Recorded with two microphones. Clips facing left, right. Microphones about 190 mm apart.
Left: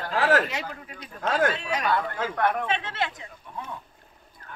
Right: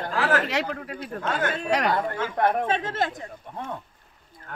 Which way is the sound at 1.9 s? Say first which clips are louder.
Right 1 dB; 30° right (ahead or behind).